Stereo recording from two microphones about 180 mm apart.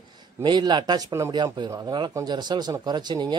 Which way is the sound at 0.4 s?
25° right (ahead or behind).